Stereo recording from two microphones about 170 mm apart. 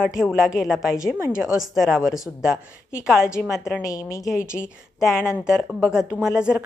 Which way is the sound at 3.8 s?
20° left (ahead or behind).